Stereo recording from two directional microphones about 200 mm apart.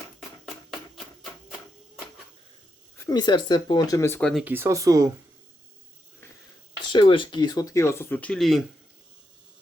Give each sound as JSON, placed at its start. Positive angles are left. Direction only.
{"t": 0.4, "sound": "a sound", "side_deg": 0}
{"t": 3.1, "sound": "speech", "side_deg": 20}
{"t": 4.4, "sound": "speech", "side_deg": -10}
{"t": 6.7, "sound": "speech", "side_deg": 25}